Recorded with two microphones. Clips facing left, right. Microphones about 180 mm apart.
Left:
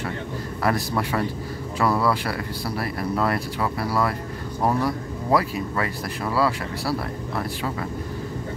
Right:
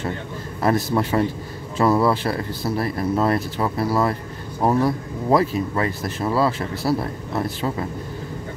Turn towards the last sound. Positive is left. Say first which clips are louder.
# right 3 dB
turn(degrees=-25)  # may be behind; listen again after turning